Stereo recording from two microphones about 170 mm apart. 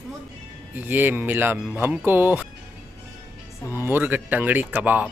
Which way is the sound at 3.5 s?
15° left (ahead or behind).